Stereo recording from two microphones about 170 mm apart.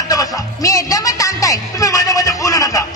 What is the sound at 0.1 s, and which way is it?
Music, 20° left (ahead or behind).